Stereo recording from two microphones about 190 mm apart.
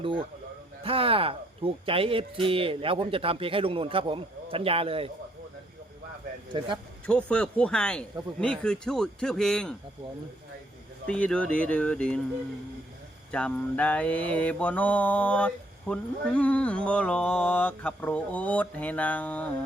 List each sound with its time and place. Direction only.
0.0 s speech: 25° right (ahead or behind)
6.5 s speech: 25° right (ahead or behind)
7.1 s speech: 5° left (ahead or behind)
11.0 s speech: 5° left (ahead or behind)
13.3 s mantra: 5° left (ahead or behind)